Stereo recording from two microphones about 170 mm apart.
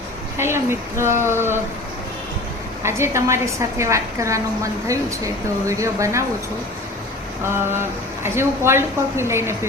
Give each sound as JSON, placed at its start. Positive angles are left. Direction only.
{"t": 0.3, "sound": "a woman's voice", "side_deg": -15}
{"t": 2.8, "sound": "a woman's voice", "side_deg": -15}
{"t": 7.4, "sound": "a woman's voice", "side_deg": -15}